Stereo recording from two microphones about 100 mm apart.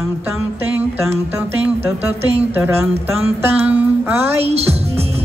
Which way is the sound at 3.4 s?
20° right (ahead or behind).